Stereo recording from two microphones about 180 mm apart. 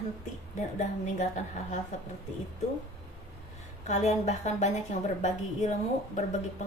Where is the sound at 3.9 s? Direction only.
40° left (ahead or behind).